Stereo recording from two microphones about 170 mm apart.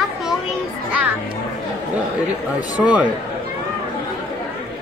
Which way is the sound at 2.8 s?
5° right (ahead or behind).